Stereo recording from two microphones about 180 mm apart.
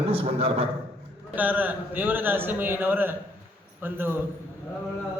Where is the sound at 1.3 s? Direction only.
10° right (ahead or behind).